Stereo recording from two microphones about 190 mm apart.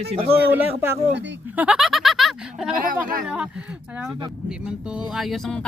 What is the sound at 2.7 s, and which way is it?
Speech, 45° right (ahead or behind).